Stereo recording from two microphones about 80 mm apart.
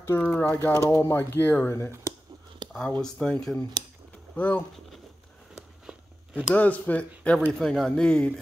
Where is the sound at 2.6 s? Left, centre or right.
Right.